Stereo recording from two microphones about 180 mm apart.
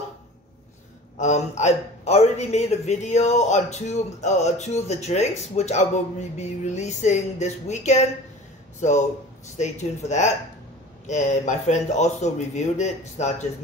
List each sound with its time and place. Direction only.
1.1 s a man's voice: 40° left (ahead or behind)